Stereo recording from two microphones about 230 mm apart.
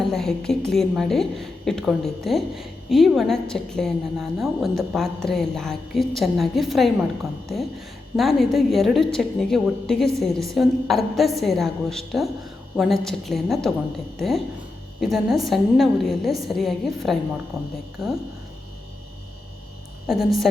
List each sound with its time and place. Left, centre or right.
0.0 s a woman's voice: centre
20.1 s a woman's voice: centre